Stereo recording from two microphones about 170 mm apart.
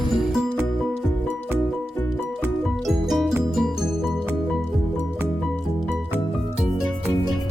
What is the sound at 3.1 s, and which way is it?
Music, centre (ahead or behind).